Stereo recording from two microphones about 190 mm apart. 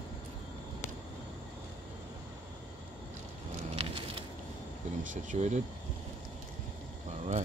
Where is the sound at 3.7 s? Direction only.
30° right (ahead or behind).